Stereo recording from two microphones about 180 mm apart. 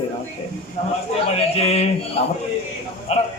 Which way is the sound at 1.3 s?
35° left (ahead or behind).